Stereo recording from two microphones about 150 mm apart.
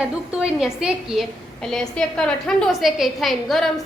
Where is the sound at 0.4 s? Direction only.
5° right (ahead or behind).